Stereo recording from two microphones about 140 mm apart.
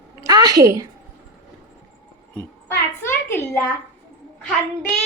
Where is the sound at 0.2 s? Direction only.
30° right (ahead or behind).